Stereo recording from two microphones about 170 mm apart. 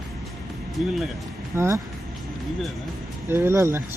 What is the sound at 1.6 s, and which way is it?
Speech, 15° right (ahead or behind).